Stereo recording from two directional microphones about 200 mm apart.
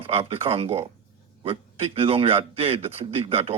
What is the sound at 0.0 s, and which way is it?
A man's voice, 30° right (ahead or behind).